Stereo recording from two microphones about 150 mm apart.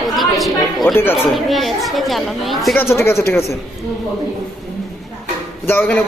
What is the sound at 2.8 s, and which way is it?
Speech, 15° left (ahead or behind).